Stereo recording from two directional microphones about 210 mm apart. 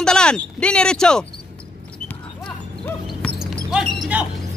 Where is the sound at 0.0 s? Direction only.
5° left (ahead or behind).